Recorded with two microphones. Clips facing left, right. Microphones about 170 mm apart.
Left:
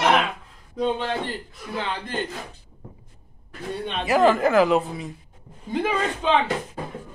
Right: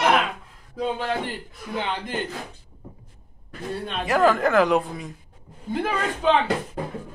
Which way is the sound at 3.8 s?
Centre (ahead or behind).